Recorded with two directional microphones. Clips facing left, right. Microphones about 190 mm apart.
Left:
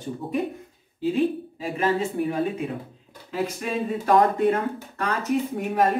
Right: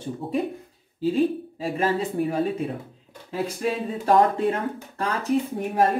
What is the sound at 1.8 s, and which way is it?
Speech, 35° right (ahead or behind).